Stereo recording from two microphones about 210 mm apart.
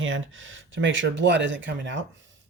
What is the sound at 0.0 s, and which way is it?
Speech, 65° right (ahead or behind).